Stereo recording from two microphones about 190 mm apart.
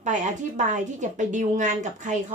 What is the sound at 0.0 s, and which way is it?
Speech, 40° right (ahead or behind).